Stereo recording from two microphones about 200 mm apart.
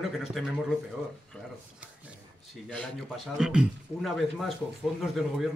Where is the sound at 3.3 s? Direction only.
5° right (ahead or behind).